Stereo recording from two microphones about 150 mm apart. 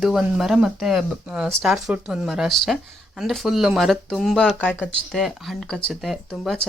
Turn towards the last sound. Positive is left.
turn(degrees=0)  # may be behind; listen again after turning